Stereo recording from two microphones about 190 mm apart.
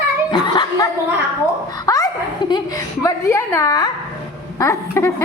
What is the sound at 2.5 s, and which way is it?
Speech, 15° left (ahead or behind).